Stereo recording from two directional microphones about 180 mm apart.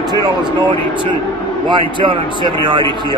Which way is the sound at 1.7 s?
25° right (ahead or behind).